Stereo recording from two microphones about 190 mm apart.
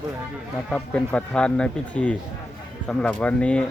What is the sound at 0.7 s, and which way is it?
Speech, 5° left (ahead or behind).